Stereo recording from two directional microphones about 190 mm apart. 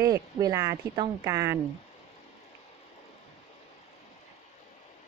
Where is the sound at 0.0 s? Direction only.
20° right (ahead or behind).